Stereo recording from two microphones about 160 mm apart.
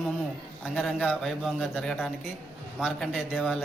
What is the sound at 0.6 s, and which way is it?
A man's voice, 5° left (ahead or behind).